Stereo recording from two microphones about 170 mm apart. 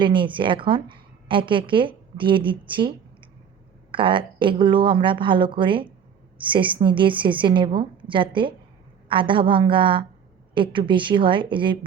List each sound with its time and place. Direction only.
0.0 s a woman's voice: 30° right (ahead or behind)
3.9 s a woman's voice: 30° right (ahead or behind)